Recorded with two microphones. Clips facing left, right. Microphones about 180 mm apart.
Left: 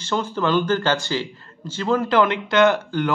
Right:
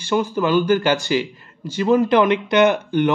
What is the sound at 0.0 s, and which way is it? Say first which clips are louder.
Speech: right 3 dB; 15° right (ahead or behind).